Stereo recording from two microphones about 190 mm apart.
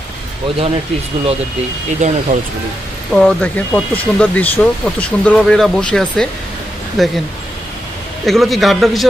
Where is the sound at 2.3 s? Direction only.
45° right (ahead or behind).